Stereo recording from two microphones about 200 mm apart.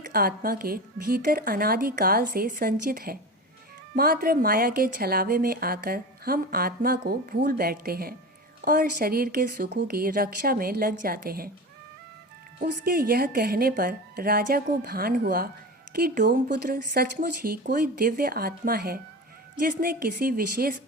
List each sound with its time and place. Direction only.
0.1 s a woman's voice: 50° right (ahead or behind)
12.6 s a woman's voice: 45° right (ahead or behind)